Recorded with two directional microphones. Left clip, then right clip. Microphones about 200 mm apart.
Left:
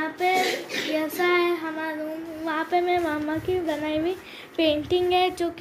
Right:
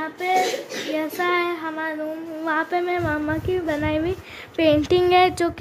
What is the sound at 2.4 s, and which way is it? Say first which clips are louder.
Speech: right 2 dB; 25° right (ahead or behind).